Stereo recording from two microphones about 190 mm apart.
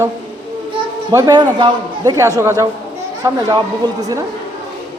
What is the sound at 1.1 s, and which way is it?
A man's voice, 20° right (ahead or behind).